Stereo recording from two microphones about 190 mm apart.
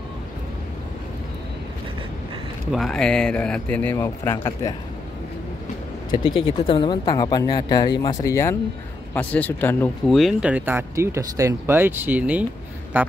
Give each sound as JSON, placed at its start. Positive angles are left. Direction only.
{"t": 2.7, "sound": "speech", "side_deg": 0}
{"t": 6.1, "sound": "speech", "side_deg": 25}
{"t": 10.1, "sound": "speech", "side_deg": -5}